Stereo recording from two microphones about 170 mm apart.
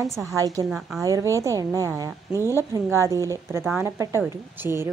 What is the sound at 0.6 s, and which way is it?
Speech, centre (ahead or behind).